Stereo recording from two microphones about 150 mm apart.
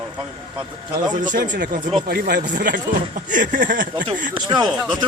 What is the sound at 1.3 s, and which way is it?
Speech, 60° right (ahead or behind).